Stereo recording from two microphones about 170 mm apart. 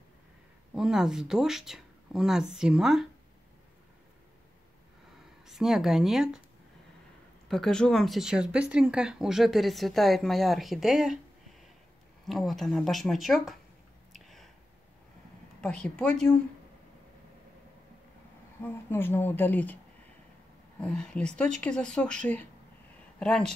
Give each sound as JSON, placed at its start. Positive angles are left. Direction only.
{"t": 0.7, "sound": "speech", "side_deg": -5}
{"t": 5.5, "sound": "speech", "side_deg": 0}
{"t": 7.4, "sound": "speech", "side_deg": 5}
{"t": 12.3, "sound": "speech", "side_deg": 0}
{"t": 14.1, "sound": "a sound", "side_deg": 0}
{"t": 15.6, "sound": "speech", "side_deg": 5}
{"t": 18.6, "sound": "a woman's voice", "side_deg": 10}
{"t": 20.8, "sound": "speech", "side_deg": 5}